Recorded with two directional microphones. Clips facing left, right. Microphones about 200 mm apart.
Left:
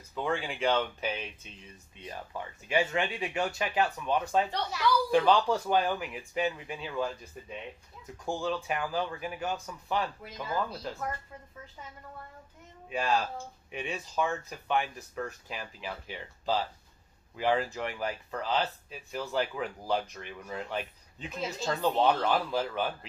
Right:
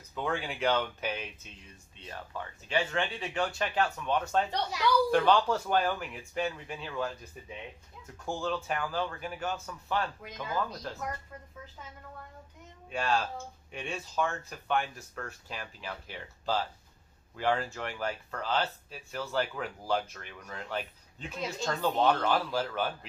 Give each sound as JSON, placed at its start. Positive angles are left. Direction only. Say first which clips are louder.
{"t": 0.3, "sound": "speech", "louder": "left 2 dB", "side_deg": -5}
{"t": 0.6, "sound": "speech", "louder": "even", "side_deg": 10}
{"t": 4.6, "sound": "a woman's voice", "louder": "even", "side_deg": -15}
{"t": 5.1, "sound": "speech", "louder": "left 1 dB", "side_deg": 0}
{"t": 8.4, "sound": "speech", "louder": "even", "side_deg": 5}
{"t": 12.9, "sound": "speech", "louder": "left 1 dB", "side_deg": 5}